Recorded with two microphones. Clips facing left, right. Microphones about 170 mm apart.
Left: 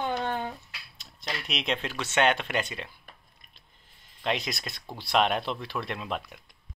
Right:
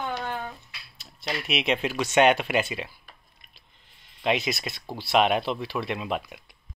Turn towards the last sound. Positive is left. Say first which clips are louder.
# right 4 dB
turn(degrees=-10)  # may be behind; listen again after turning